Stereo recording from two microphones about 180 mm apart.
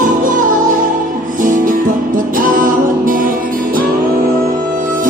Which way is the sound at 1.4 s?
45° right (ahead or behind).